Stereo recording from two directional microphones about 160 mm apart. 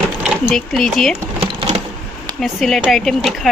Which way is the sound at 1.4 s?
35° right (ahead or behind).